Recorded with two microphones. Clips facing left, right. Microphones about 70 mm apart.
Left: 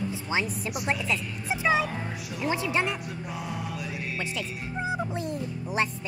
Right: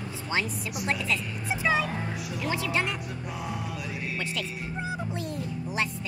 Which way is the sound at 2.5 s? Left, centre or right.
Left.